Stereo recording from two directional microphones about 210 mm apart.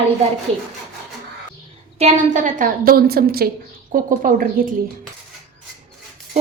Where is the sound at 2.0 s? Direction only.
35° right (ahead or behind).